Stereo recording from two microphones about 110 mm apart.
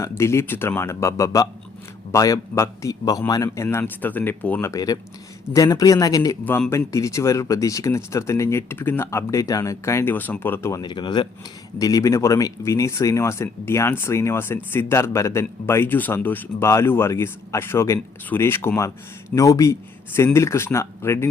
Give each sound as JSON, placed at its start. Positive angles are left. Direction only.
{"t": 0.0, "sound": "speech", "side_deg": 25}
{"t": 4.7, "sound": "a man's voice", "side_deg": 35}
{"t": 10.8, "sound": "speech", "side_deg": 40}
{"t": 11.8, "sound": "speech", "side_deg": 30}